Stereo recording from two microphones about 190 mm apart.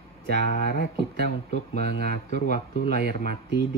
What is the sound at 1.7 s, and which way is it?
Speech, 60° right (ahead or behind).